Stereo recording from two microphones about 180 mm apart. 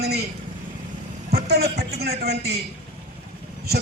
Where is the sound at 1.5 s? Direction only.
60° right (ahead or behind).